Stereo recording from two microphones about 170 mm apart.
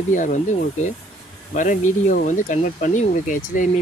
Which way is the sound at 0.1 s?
45° left (ahead or behind).